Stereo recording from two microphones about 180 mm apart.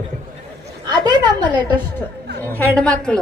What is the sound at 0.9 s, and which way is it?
Speech, 25° right (ahead or behind).